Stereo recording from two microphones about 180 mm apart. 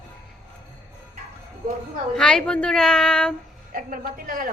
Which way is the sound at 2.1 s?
5° left (ahead or behind).